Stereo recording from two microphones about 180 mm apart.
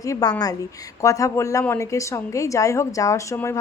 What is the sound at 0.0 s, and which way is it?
A woman's voice, 20° left (ahead or behind).